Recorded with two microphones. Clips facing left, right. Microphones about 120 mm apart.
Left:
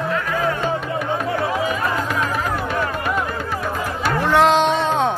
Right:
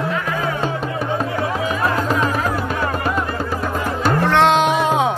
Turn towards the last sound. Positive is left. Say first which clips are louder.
# right 2 dB
turn(degrees=-5)  # may be behind; listen again after turning